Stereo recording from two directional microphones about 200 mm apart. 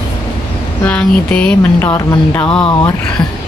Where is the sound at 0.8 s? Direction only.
5° left (ahead or behind).